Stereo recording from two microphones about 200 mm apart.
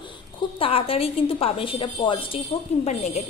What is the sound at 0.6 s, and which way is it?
A woman's voice, 30° left (ahead or behind).